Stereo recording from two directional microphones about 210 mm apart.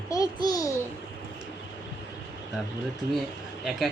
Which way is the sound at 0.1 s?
15° left (ahead or behind).